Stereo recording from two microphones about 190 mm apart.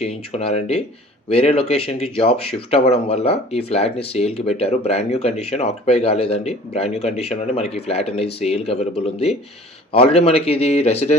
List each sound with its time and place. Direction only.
0.0 s speech: 30° left (ahead or behind)